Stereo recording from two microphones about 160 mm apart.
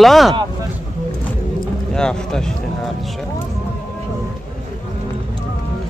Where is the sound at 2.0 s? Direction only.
5° left (ahead or behind).